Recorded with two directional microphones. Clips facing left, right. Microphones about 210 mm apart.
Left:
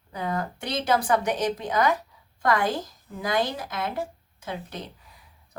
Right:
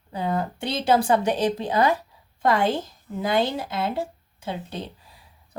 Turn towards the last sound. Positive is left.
turn(degrees=-30)  # may be behind; listen again after turning